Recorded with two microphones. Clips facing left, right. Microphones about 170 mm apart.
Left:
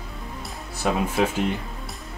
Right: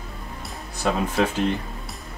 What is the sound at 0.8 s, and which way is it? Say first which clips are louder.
Speech: even; 10° left (ahead or behind).